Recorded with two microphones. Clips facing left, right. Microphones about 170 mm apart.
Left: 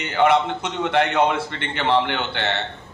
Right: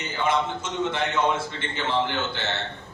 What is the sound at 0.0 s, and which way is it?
A man's voice, 65° left (ahead or behind).